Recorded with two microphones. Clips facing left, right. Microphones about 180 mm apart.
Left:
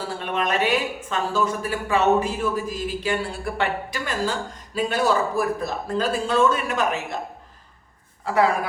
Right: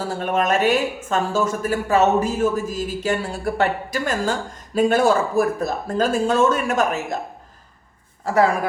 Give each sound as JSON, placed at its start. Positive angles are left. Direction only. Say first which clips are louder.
{"t": 0.0, "sound": "speech", "louder": "right 4 dB", "side_deg": -45}